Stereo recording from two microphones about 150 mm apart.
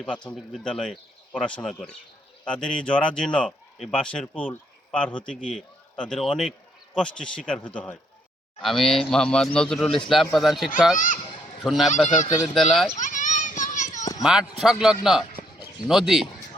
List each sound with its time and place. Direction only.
0.0 s a man's voice: 10° left (ahead or behind)
10.9 s a child's voice: 60° left (ahead or behind)
11.6 s speech: centre (ahead or behind)
12.0 s a child's voice: 55° left (ahead or behind)
12.5 s speech: centre (ahead or behind)
13.0 s children playing: 55° left (ahead or behind)
14.2 s speech: 5° right (ahead or behind)